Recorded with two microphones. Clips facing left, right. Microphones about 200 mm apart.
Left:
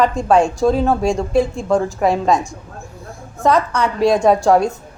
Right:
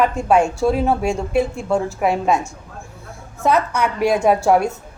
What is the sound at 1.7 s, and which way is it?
Speech, 35° left (ahead or behind).